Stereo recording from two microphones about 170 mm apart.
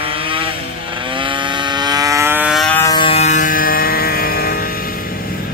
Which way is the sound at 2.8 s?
20° left (ahead or behind).